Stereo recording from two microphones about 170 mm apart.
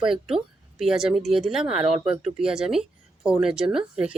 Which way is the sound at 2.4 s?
5° right (ahead or behind).